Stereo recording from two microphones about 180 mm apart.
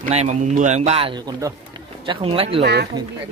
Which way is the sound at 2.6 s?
65° right (ahead or behind).